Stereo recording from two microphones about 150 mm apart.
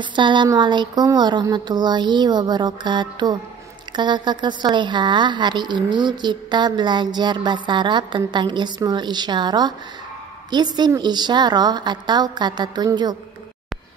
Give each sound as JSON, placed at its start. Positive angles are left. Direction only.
{"t": 0.0, "sound": "speech", "side_deg": -30}